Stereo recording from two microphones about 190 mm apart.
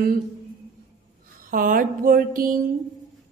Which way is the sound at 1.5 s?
45° right (ahead or behind).